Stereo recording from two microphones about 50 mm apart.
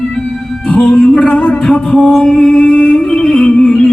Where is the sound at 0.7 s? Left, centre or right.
Left.